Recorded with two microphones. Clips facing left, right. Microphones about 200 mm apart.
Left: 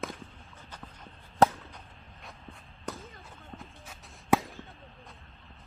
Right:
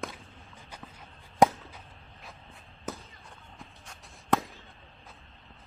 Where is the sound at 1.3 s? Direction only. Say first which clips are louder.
Right 1 dB; 15° right (ahead or behind).